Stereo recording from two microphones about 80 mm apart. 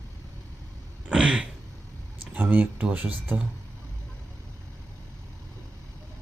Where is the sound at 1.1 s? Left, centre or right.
Centre.